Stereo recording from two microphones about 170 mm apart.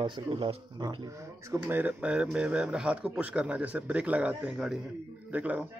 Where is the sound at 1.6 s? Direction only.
10° right (ahead or behind).